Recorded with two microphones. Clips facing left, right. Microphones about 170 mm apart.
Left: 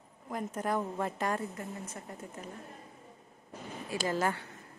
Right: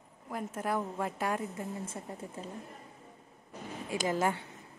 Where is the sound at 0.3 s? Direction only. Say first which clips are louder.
Left 1 dB; 5° right (ahead or behind).